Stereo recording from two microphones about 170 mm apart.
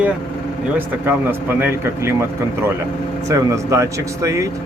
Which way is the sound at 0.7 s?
10° right (ahead or behind).